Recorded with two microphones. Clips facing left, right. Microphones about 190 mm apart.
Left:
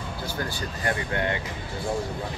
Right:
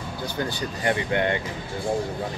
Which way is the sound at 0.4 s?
20° right (ahead or behind).